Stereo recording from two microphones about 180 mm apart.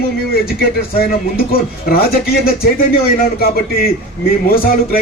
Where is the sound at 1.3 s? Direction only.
55° left (ahead or behind).